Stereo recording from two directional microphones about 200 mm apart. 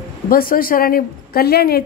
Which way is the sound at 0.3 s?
45° left (ahead or behind).